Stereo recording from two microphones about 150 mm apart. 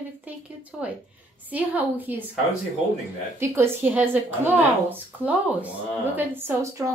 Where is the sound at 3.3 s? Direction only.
15° right (ahead or behind).